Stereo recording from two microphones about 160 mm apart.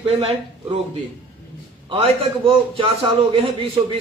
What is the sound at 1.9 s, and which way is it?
A man's voice, 35° right (ahead or behind).